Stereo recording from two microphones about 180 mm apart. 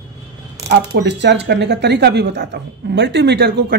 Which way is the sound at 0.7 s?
75° right (ahead or behind).